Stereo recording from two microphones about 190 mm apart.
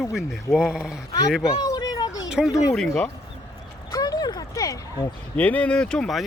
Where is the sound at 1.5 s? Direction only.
15° left (ahead or behind).